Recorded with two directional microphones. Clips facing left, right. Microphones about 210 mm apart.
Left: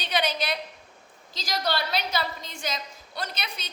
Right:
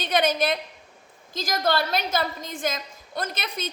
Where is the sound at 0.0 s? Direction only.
50° right (ahead or behind).